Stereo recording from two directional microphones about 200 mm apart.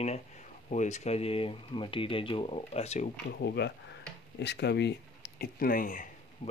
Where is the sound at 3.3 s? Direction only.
55° left (ahead or behind); by 6.5 s 40° left (ahead or behind).